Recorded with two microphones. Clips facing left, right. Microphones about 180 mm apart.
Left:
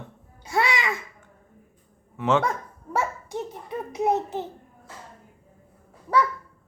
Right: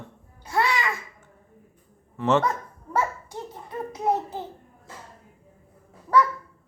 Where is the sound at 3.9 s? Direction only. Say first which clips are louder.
Left 2 dB; 20° left (ahead or behind).